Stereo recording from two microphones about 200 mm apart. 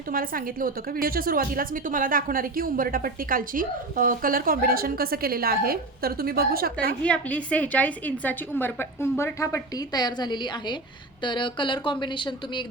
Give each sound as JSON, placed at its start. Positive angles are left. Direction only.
{"t": 0.1, "sound": "a woman's voice", "side_deg": -45}
{"t": 7.0, "sound": "a woman's voice", "side_deg": 5}